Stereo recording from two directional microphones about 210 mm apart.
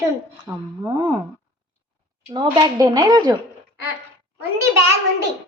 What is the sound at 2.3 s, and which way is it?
Speech, 20° right (ahead or behind).